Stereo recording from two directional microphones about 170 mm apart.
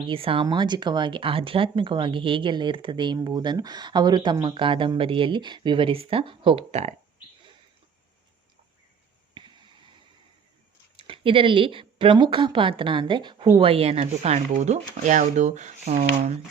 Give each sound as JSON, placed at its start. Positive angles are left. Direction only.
{"t": 0.1, "sound": "speech", "side_deg": -30}
{"t": 10.9, "sound": "speech", "side_deg": -30}